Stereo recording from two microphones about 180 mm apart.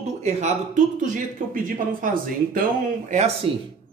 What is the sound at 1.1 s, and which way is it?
Speech, 50° right (ahead or behind).